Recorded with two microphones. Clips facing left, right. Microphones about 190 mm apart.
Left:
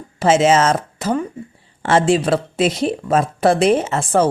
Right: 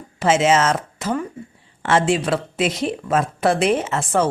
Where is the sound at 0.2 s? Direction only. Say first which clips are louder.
Left 3 dB; 35° left (ahead or behind).